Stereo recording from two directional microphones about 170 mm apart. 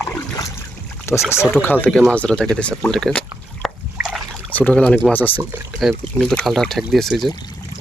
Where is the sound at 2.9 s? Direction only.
5° left (ahead or behind).